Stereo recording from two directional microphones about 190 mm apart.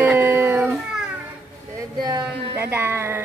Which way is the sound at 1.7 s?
20° right (ahead or behind).